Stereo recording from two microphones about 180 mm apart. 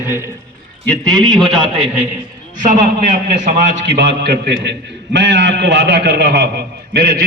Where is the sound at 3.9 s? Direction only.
70° right (ahead or behind).